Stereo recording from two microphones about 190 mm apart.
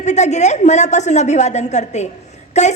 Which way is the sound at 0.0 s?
35° left (ahead or behind).